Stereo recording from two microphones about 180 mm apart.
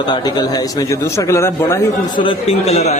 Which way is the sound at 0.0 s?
25° left (ahead or behind).